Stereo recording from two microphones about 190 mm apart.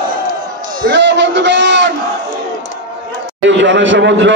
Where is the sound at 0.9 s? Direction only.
65° right (ahead or behind).